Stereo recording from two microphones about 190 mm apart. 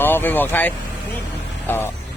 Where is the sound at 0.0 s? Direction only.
10° left (ahead or behind).